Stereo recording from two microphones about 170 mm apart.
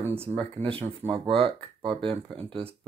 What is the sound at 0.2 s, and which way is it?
Speech, 35° right (ahead or behind).